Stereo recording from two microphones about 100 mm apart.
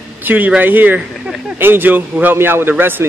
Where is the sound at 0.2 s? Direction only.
20° right (ahead or behind).